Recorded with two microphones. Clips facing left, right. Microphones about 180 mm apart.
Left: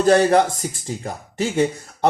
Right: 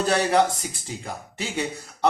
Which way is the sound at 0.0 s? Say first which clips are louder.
Left 6 dB; 45° left (ahead or behind).